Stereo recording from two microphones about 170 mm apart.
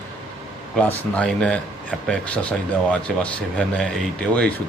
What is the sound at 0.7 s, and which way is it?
Speech, 10° left (ahead or behind).